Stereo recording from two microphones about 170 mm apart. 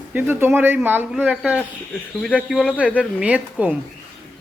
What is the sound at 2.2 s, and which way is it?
Speech, 5° left (ahead or behind).